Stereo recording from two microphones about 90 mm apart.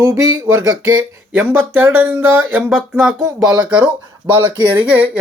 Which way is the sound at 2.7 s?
Centre (ahead or behind).